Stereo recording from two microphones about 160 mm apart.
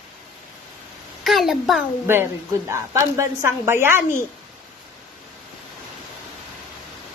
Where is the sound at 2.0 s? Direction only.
15° right (ahead or behind).